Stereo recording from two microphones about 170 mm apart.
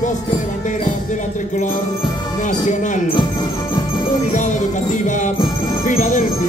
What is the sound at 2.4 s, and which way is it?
Jingle bell, 45° left (ahead or behind).